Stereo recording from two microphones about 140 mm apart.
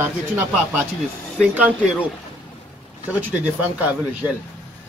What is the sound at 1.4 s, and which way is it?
Speech, 10° right (ahead or behind).